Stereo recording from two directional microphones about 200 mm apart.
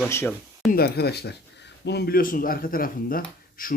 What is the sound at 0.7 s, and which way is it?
Speech, 50° left (ahead or behind).